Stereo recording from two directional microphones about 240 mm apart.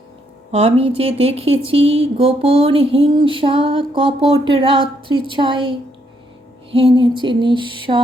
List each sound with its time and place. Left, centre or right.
0.5 s speech: right